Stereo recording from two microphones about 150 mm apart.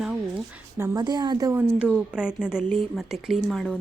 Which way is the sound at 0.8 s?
25° right (ahead or behind).